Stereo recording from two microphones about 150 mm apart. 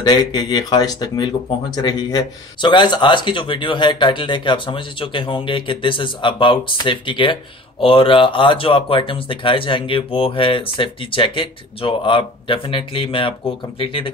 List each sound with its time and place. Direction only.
0.0 s speech: 25° left (ahead or behind)